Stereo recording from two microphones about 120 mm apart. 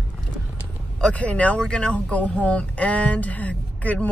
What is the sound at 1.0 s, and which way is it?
Speech, 10° left (ahead or behind).